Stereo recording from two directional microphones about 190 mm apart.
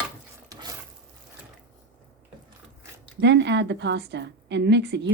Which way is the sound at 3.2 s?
65° right (ahead or behind).